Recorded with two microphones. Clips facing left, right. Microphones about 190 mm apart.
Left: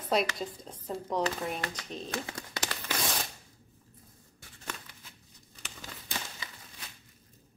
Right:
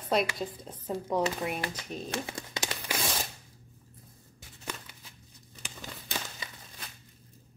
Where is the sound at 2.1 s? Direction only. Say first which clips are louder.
Right 1 dB; 20° right (ahead or behind).